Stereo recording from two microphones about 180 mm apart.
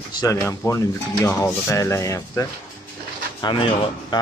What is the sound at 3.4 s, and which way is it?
Speech, 30° left (ahead or behind).